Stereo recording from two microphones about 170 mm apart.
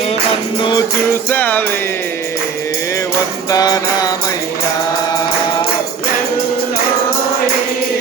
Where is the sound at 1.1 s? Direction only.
10° left (ahead or behind).